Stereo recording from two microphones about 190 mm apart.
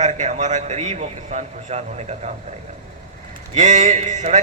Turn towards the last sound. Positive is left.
turn(degrees=-40)  # may be behind; listen again after turning